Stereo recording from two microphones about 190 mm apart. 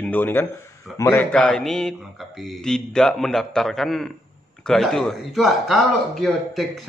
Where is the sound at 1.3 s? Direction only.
Centre (ahead or behind).